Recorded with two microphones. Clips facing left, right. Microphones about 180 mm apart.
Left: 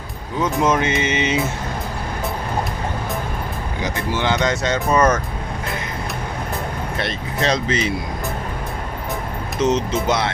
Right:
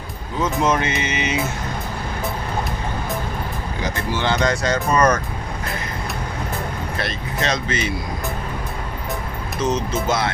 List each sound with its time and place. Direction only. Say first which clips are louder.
0.7 s speech: left 2 dB; 25° left (ahead or behind)
3.8 s speech: left 1 dB; 20° left (ahead or behind)
7.0 s speech: left 3 dB; 30° left (ahead or behind)
9.6 s speech: left 3 dB; 25° left (ahead or behind)